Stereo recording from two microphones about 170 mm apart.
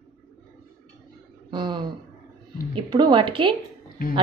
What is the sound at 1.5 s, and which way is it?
A woman's voice, 25° right (ahead or behind).